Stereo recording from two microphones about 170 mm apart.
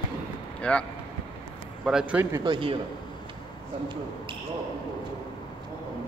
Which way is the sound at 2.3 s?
30° right (ahead or behind).